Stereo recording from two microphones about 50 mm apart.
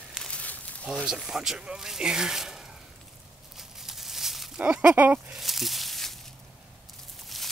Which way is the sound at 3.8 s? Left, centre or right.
Centre.